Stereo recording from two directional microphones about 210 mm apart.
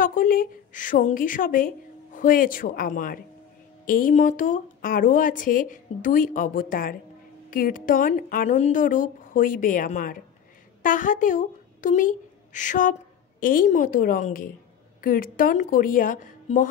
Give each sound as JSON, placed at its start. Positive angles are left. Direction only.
{"t": 0.0, "sound": "speech", "side_deg": 40}